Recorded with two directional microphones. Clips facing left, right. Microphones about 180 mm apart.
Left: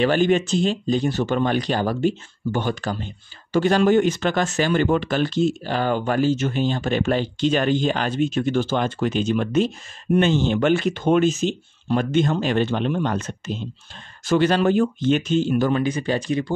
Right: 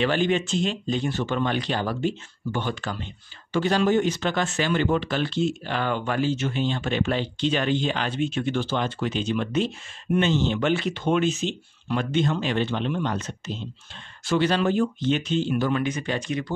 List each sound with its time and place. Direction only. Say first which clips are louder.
0.0 s speech: left 4 dB; 45° left (ahead or behind)
3.5 s speech: left 4 dB; 50° left (ahead or behind); by 16.5 s 30° left (ahead or behind)